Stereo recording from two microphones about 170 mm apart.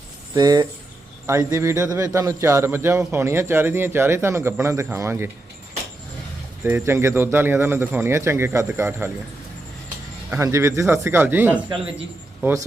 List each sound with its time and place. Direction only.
0.3 s a man's voice: 25° right (ahead or behind)
6.7 s a man's voice: 15° right (ahead or behind)
10.2 s a man's voice: 15° right (ahead or behind)